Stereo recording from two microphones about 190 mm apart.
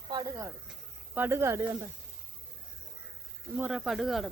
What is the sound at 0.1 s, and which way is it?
Speech, 20° right (ahead or behind).